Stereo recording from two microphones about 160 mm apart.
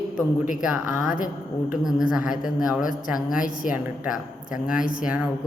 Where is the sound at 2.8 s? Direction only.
55° left (ahead or behind).